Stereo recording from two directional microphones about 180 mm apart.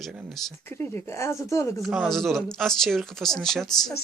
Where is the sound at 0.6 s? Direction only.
15° left (ahead or behind).